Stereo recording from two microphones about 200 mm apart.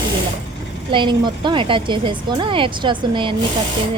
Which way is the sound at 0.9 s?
25° right (ahead or behind).